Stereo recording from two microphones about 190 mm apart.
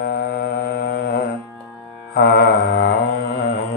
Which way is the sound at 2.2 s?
55° left (ahead or behind).